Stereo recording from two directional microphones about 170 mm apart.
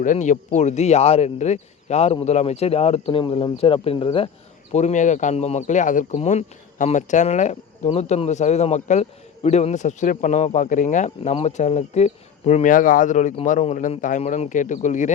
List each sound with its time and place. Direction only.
0.0 s speech: 45° left (ahead or behind)
4.7 s a man's voice: 45° left (ahead or behind)